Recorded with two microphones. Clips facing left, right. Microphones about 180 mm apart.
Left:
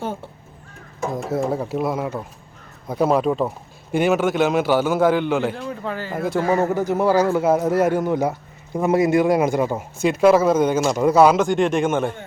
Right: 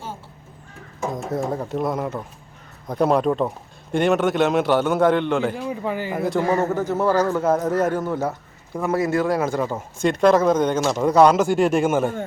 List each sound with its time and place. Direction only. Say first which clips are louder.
0.0 s a sound: left 7 dB; 60° left (ahead or behind)
1.1 s a man's voice: left 3 dB; 5° left (ahead or behind)
5.6 s speech: right 2 dB; 15° right (ahead or behind)
6.1 s a man's voice: left 2 dB; centre (ahead or behind)